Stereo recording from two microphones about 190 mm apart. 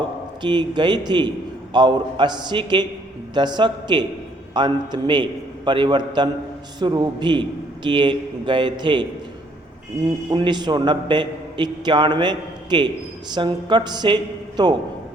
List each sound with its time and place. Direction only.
0.4 s a man's voice: 25° right (ahead or behind)
10.2 s a man's voice: 25° right (ahead or behind)